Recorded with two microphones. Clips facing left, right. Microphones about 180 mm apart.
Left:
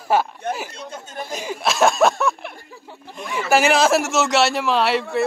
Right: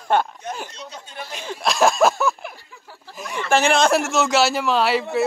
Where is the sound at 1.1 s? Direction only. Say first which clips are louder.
Left 6 dB; 45° left (ahead or behind).